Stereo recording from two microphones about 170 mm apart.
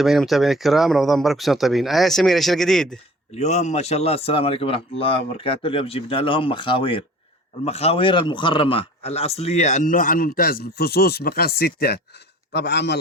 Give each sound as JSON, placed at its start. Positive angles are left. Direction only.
{"t": 0.0, "sound": "speech", "side_deg": 0}
{"t": 3.3, "sound": "a man's voice", "side_deg": 40}
{"t": 12.5, "sound": "a man's voice", "side_deg": 80}